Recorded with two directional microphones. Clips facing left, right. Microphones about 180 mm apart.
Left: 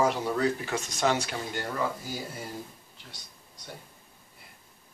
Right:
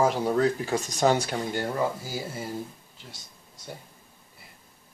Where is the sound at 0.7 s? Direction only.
40° right (ahead or behind).